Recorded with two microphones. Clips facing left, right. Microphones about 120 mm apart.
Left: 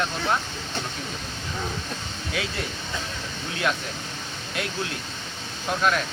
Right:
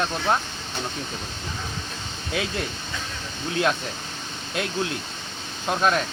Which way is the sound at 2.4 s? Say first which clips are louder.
Right 2 dB; 25° right (ahead or behind).